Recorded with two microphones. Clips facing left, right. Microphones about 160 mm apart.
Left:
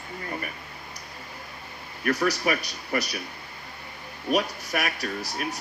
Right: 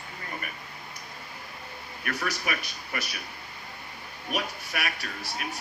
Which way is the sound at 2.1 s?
35° left (ahead or behind).